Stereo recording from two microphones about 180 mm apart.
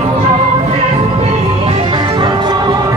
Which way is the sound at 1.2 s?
30° right (ahead or behind).